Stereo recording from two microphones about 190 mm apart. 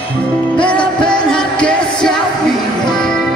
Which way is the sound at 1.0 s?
5° left (ahead or behind).